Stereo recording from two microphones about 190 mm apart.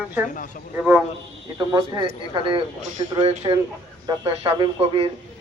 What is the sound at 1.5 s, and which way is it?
Speech, 25° right (ahead or behind).